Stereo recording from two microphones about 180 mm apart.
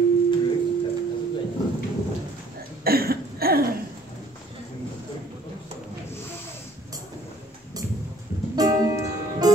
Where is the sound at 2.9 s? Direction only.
60° right (ahead or behind).